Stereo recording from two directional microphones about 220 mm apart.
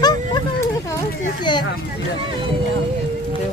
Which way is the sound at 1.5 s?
20° left (ahead or behind).